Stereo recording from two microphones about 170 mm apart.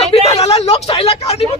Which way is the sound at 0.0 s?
35° left (ahead or behind).